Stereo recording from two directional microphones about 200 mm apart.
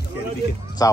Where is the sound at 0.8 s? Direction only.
15° left (ahead or behind).